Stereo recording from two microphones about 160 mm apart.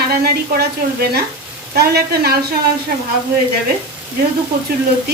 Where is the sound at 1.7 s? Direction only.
80° right.